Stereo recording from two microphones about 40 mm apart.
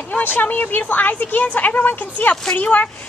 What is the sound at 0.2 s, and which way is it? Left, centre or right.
A woman's voice, left.